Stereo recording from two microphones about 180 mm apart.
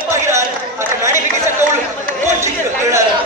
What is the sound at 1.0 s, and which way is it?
Chatter, 15° right (ahead or behind).